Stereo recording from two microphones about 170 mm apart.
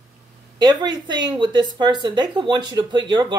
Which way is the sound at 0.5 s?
25° right (ahead or behind).